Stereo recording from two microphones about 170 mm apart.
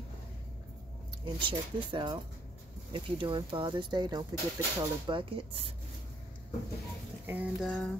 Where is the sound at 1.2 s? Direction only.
30° right (ahead or behind).